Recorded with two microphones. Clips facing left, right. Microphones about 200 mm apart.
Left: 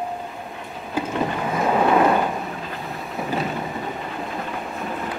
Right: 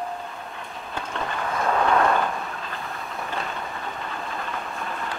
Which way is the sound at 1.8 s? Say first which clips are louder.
Left 4 dB; 15° left (ahead or behind).